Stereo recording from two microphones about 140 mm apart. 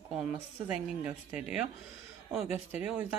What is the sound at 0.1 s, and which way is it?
A woman's voice, centre (ahead or behind).